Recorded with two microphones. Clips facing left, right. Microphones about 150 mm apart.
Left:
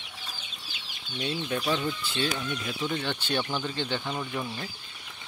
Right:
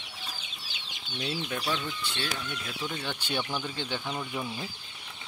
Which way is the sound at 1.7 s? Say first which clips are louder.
Left 4 dB; 15° left (ahead or behind).